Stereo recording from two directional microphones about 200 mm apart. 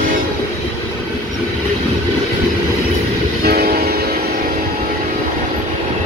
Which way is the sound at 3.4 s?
50° right (ahead or behind).